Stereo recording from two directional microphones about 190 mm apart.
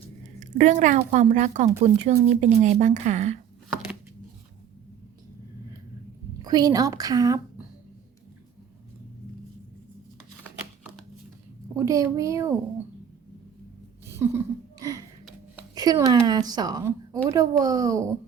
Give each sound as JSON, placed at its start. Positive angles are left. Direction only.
{"t": 0.3, "sound": "a woman's voice", "side_deg": -40}
{"t": 6.4, "sound": "speech", "side_deg": -20}
{"t": 11.8, "sound": "speech", "side_deg": -15}
{"t": 14.1, "sound": "a sound", "side_deg": -15}
{"t": 15.7, "sound": "speech", "side_deg": -20}